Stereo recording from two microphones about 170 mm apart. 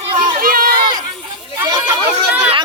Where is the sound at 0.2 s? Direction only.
55° right (ahead or behind).